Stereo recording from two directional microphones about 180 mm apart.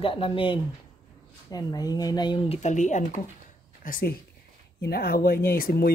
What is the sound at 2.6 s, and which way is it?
Speech, 40° left (ahead or behind).